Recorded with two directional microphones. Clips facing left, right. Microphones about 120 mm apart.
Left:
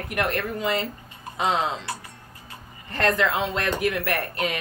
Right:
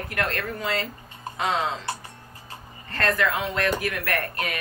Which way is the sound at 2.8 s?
20° left (ahead or behind).